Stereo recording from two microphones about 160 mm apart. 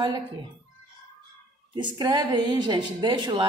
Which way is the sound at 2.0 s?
25° right (ahead or behind).